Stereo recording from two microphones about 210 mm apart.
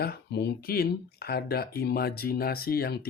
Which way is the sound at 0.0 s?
50° left (ahead or behind).